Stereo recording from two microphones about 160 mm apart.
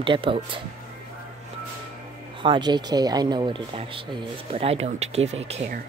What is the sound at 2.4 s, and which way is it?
Speech, 30° right (ahead or behind).